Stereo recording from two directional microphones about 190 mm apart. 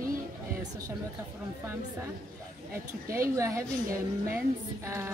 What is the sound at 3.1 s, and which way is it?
A man's voice, 15° right (ahead or behind).